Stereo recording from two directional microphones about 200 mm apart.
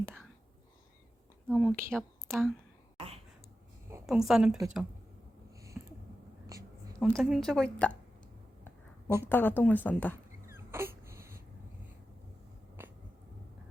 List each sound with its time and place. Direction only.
1.5 s speech: 5° left (ahead or behind)
2.0 s a woman's voice: 10° right (ahead or behind)
4.0 s a woman's voice: centre (ahead or behind)
5.7 s a sound: 10° right (ahead or behind)
7.0 s a woman's voice: centre (ahead or behind)
9.0 s a woman's voice: 10° right (ahead or behind)
9.3 s speech: 10° left (ahead or behind)
10.5 s a sound: 10° right (ahead or behind)
12.8 s cat: 10° right (ahead or behind)